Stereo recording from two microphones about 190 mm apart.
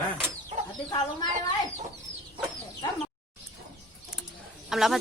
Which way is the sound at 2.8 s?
20° left (ahead or behind).